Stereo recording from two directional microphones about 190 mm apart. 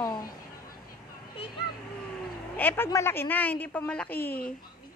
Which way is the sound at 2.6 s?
10° left (ahead or behind).